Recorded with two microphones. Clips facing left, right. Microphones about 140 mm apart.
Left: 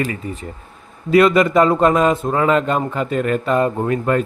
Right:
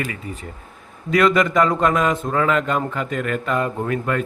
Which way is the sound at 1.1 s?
25° left (ahead or behind).